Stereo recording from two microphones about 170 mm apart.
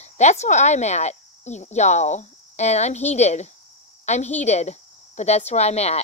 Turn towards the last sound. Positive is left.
turn(degrees=40)  # may be behind; listen again after turning